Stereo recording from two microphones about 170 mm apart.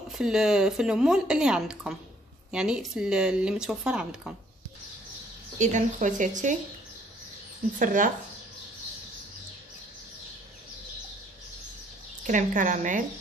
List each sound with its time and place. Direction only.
0.1 s speech: 5° right (ahead or behind)
5.6 s speech: 45° right (ahead or behind)
7.8 s speech: 50° right (ahead or behind)
12.3 s speech: 50° right (ahead or behind)